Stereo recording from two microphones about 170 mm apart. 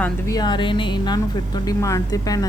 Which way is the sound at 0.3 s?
25° left (ahead or behind).